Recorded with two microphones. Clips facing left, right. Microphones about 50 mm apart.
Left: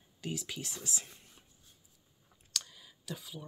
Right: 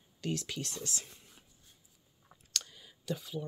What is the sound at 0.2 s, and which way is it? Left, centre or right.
Speech, centre.